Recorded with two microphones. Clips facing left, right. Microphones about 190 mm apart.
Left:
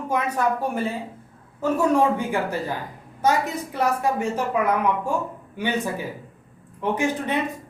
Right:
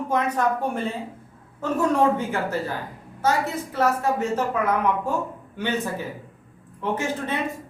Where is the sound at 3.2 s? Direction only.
15° left (ahead or behind).